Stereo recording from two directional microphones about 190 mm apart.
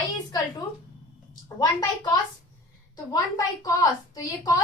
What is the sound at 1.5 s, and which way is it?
A woman's voice, 20° left (ahead or behind).